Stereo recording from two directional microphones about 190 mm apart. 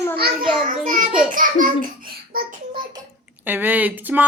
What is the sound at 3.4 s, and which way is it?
Speech, 10° right (ahead or behind).